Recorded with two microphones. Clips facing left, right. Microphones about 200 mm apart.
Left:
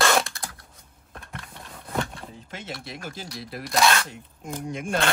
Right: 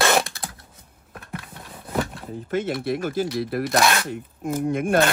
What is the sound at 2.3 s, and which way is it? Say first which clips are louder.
Speech: right 15 dB; 55° right (ahead or behind).